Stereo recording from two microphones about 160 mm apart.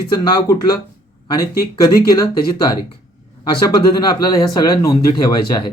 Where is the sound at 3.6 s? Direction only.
25° left (ahead or behind).